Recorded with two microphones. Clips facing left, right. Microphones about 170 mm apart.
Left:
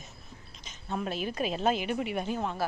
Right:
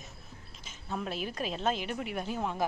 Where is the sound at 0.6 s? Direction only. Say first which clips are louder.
Left 2 dB; 5° right (ahead or behind).